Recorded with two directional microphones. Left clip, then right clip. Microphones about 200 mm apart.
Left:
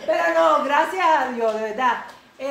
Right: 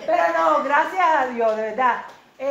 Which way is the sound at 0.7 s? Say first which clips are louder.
Even; 15° right (ahead or behind).